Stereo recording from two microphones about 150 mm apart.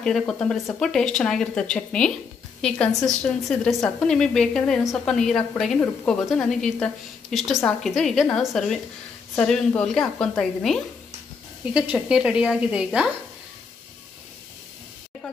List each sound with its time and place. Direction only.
0.0 s a woman's voice: 5° left (ahead or behind)